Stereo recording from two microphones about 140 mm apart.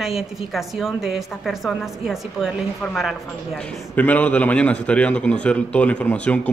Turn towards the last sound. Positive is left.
turn(degrees=10)  # may be behind; listen again after turning